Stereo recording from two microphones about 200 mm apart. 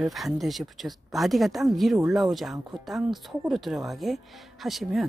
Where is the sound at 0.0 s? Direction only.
Centre (ahead or behind).